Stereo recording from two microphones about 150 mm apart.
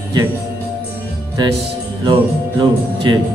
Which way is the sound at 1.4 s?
30° right (ahead or behind).